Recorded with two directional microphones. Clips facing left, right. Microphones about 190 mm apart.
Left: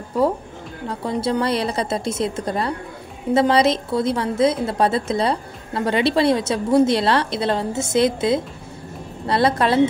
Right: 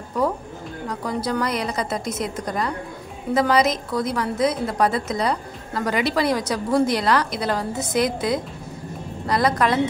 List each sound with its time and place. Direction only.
0.8 s a woman's voice: 25° left (ahead or behind)